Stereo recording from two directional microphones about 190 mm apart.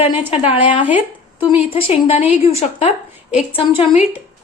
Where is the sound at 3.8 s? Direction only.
30° left (ahead or behind).